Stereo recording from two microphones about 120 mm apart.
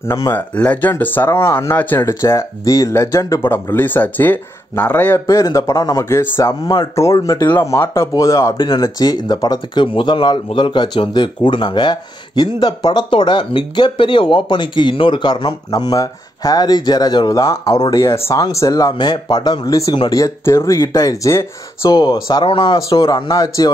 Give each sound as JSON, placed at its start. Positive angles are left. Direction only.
{"t": 0.0, "sound": "speech", "side_deg": 25}
{"t": 0.4, "sound": "speech", "side_deg": 10}
{"t": 5.2, "sound": "speech", "side_deg": 30}
{"t": 9.8, "sound": "speech", "side_deg": 45}
{"t": 21.8, "sound": "speech", "side_deg": 40}